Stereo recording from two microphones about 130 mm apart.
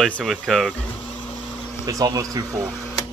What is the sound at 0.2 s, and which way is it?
Speech, centre (ahead or behind).